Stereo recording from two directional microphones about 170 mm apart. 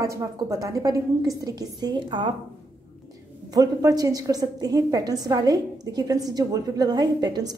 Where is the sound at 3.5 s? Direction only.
20° right (ahead or behind).